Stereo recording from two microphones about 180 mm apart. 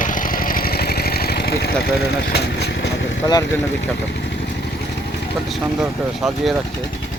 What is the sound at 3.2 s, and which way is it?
Speech, 25° left (ahead or behind).